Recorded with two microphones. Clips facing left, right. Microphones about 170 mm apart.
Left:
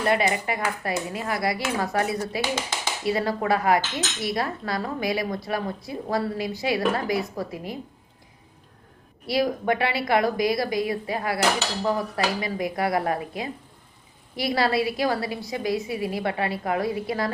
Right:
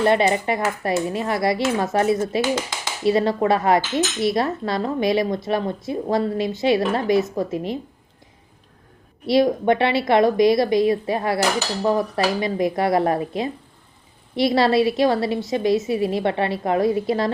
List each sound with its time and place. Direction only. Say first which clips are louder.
0.0 s speech: right 5 dB; 25° right (ahead or behind)
9.2 s speech: right 6 dB; 25° right (ahead or behind)